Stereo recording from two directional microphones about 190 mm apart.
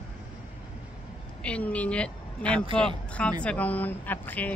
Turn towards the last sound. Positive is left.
turn(degrees=10)  # may be behind; listen again after turning